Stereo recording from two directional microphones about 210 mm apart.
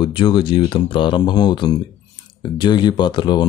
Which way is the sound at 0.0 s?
25° left (ahead or behind).